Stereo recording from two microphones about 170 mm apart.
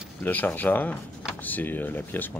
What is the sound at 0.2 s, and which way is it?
Speech, 10° left (ahead or behind).